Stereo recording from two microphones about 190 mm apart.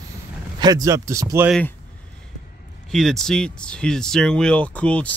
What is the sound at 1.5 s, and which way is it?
Speech, 5° left (ahead or behind).